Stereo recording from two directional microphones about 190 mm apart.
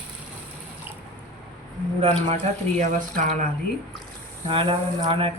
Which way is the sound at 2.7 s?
40° right (ahead or behind).